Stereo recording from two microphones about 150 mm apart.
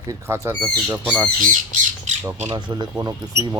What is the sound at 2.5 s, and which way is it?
Speech, 25° right (ahead or behind).